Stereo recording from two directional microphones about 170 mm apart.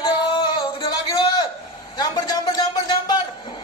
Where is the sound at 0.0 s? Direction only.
25° left (ahead or behind).